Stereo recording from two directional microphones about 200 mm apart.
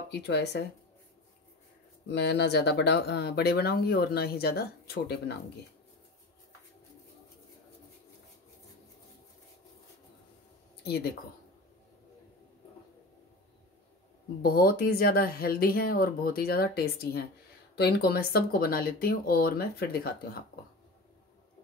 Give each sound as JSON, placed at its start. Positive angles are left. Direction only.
{"t": 0.1, "sound": "speech", "side_deg": 55}
{"t": 2.0, "sound": "speech", "side_deg": 55}
{"t": 14.4, "sound": "speech", "side_deg": 50}